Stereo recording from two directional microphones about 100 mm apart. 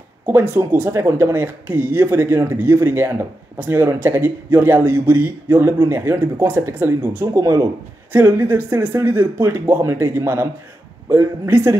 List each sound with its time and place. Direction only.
0.3 s speech: 20° right (ahead or behind)